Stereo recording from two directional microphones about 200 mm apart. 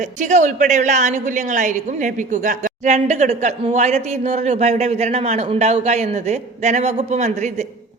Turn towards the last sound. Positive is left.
turn(degrees=-35)  # may be behind; listen again after turning